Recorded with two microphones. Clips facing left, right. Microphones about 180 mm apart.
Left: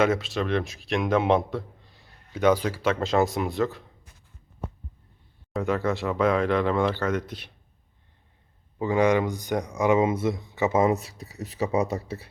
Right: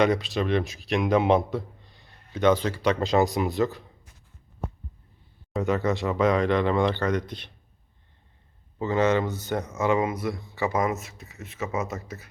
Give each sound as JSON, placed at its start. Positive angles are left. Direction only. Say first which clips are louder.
{"t": 0.0, "sound": "speech", "louder": "right 1 dB", "side_deg": 0}
{"t": 5.5, "sound": "speech", "louder": "right 1 dB", "side_deg": 0}
{"t": 8.8, "sound": "speech", "louder": "left 1 dB", "side_deg": 15}